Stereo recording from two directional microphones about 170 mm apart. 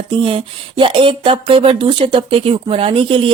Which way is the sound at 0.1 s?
30° right (ahead or behind).